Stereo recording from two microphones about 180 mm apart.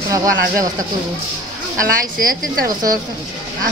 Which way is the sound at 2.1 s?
55° right (ahead or behind).